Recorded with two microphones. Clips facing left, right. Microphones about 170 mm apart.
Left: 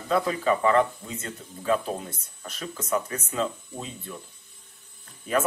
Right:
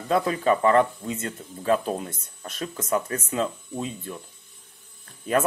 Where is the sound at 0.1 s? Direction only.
40° right (ahead or behind).